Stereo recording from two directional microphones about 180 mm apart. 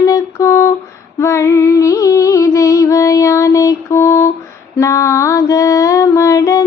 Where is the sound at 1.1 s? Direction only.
15° left (ahead or behind).